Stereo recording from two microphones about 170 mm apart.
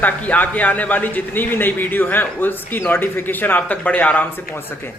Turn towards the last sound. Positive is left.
turn(degrees=10)  # may be behind; listen again after turning